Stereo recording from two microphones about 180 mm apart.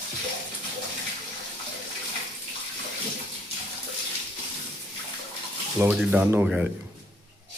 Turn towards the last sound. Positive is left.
turn(degrees=-10)  # may be behind; listen again after turning